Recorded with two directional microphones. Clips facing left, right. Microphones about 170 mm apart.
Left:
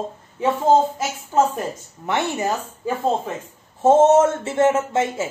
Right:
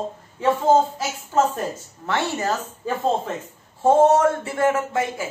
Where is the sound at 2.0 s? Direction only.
20° left (ahead or behind).